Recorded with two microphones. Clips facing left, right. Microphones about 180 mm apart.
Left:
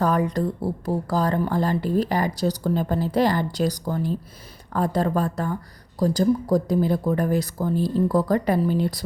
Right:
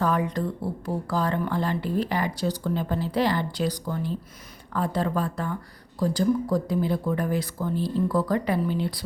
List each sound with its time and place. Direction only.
0.0 s a woman's voice: 40° left (ahead or behind)